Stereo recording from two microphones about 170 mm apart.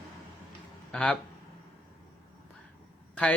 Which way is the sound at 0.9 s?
5° left (ahead or behind).